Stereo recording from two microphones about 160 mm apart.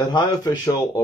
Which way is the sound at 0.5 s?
20° left (ahead or behind).